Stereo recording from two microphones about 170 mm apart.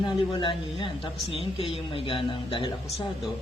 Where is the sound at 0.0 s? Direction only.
25° left (ahead or behind).